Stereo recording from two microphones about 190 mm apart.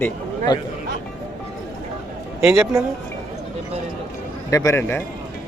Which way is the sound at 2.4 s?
5° right (ahead or behind).